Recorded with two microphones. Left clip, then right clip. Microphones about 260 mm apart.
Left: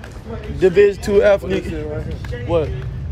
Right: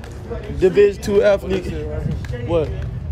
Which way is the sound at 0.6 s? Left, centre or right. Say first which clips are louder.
Left 1 dB; centre.